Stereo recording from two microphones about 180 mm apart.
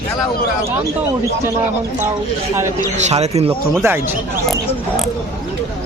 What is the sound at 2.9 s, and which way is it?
Speech, 40° right (ahead or behind).